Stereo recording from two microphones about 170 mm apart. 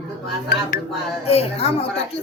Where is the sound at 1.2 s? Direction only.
35° left (ahead or behind).